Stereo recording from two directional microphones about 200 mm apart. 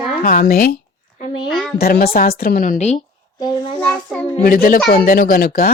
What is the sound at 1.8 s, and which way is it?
Speech, 50° left (ahead or behind).